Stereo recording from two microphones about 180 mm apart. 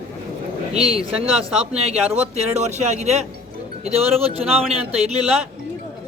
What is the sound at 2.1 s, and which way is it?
Speech, 40° right (ahead or behind).